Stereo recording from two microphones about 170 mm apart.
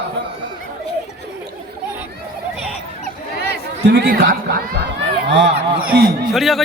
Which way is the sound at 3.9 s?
65° right (ahead or behind).